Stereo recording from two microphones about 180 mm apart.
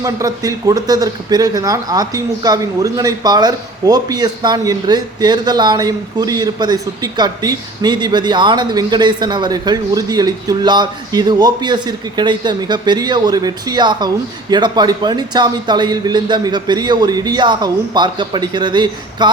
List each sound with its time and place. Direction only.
0.0 s speech: 20° right (ahead or behind)